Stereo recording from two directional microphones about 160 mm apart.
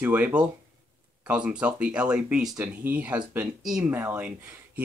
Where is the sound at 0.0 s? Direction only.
10° right (ahead or behind).